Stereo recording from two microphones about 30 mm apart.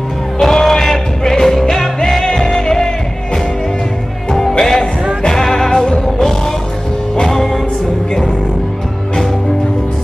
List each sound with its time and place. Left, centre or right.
0.4 s music: centre
4.3 s music: centre
7.2 s music: centre